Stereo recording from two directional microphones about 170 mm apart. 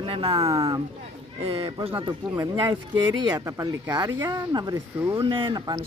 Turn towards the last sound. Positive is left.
turn(degrees=-25)  # may be behind; listen again after turning